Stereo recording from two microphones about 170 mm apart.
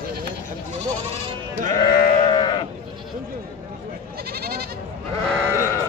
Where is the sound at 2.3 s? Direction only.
25° left (ahead or behind).